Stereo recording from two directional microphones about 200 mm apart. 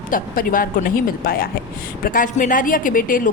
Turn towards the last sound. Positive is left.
turn(degrees=45)  # may be behind; listen again after turning